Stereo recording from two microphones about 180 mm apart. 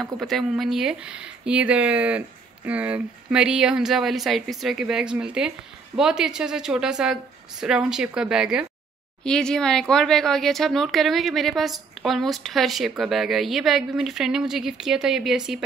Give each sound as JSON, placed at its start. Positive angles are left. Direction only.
{"t": 0.0, "sound": "speech", "side_deg": 0}